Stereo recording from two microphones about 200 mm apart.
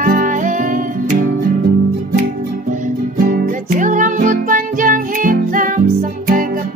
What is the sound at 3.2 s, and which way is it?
Music, 40° right (ahead or behind).